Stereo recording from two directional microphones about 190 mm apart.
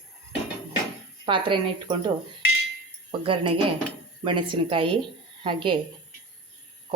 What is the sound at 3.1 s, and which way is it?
Speech, 25° right (ahead or behind).